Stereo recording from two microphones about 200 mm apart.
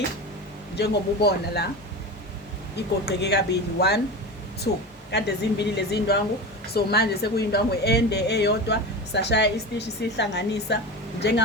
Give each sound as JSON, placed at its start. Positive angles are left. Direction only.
{"t": 0.8, "sound": "a man's voice", "side_deg": 55}
{"t": 2.7, "sound": "speech", "side_deg": 55}